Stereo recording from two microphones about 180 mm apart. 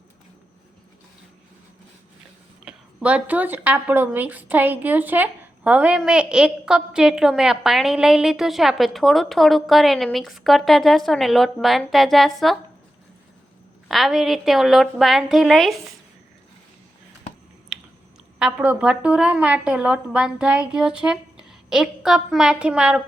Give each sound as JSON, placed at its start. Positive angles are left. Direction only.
{"t": 2.6, "sound": "a woman's voice", "side_deg": -5}
{"t": 13.8, "sound": "a woman's voice", "side_deg": 0}
{"t": 18.3, "sound": "a woman's voice", "side_deg": -5}